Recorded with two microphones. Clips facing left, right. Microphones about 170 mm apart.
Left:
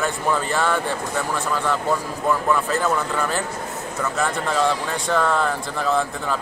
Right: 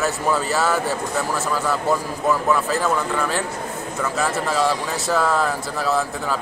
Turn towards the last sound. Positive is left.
turn(degrees=-5)  # may be behind; listen again after turning